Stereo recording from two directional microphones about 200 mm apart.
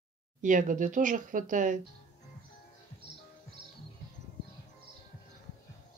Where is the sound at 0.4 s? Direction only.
40° right (ahead or behind).